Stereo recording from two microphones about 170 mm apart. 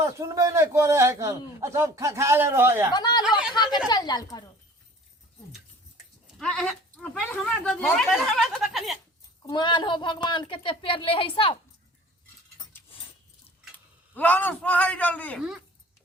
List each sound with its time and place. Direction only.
0.0 s a man's voice: 15° right (ahead or behind)
2.9 s a woman's voice: 25° left (ahead or behind)
6.4 s speech: 5° left (ahead or behind)
9.4 s speech: 25° left (ahead or behind)
12.7 s a sound: 10° left (ahead or behind)
14.1 s speech: 10° left (ahead or behind)